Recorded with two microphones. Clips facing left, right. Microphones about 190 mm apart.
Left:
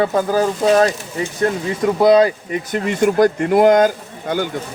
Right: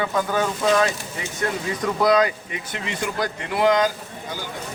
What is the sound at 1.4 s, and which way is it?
Speech, 30° left (ahead or behind).